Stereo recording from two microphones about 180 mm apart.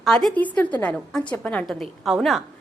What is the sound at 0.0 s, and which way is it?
A woman's voice, centre (ahead or behind).